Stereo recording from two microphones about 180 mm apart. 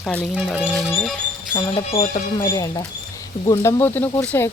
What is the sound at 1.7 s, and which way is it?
Speech, 30° left (ahead or behind).